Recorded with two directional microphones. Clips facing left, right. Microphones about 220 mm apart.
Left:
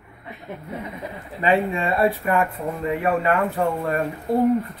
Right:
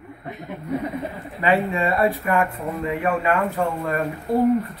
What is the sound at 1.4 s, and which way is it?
Speech, 25° left (ahead or behind).